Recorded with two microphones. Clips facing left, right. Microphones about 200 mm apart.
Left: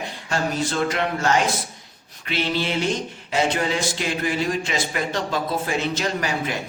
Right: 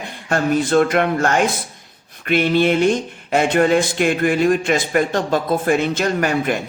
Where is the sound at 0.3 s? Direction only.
55° right (ahead or behind).